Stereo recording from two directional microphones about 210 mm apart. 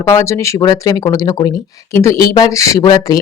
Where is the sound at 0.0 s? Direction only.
15° left (ahead or behind).